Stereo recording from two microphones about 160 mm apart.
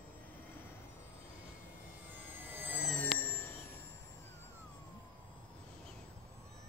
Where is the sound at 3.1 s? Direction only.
15° left (ahead or behind).